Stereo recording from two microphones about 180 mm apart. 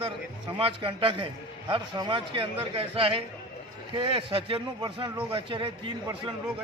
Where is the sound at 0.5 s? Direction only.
30° right (ahead or behind).